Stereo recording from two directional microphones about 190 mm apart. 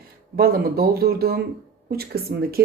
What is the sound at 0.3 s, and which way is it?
Speech, 50° right (ahead or behind).